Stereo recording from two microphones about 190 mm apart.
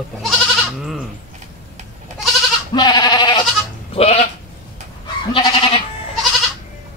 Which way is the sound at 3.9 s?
30° left (ahead or behind).